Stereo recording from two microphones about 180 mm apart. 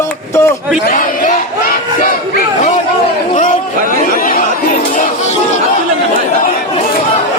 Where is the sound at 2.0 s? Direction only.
45° left (ahead or behind).